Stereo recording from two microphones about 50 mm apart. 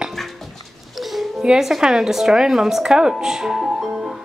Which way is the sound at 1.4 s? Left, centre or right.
Centre.